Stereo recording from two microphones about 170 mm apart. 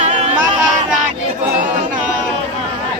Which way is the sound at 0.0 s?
45° right (ahead or behind).